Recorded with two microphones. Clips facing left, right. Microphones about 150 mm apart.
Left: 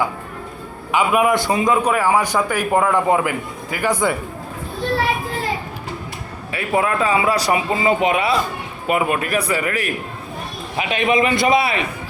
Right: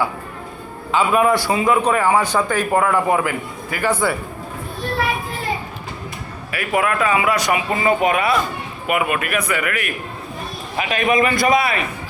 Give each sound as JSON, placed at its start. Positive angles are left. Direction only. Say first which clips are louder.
{"t": 0.9, "sound": "a man's voice", "louder": "even", "side_deg": 15}
{"t": 6.5, "sound": "a man's voice", "louder": "even", "side_deg": 25}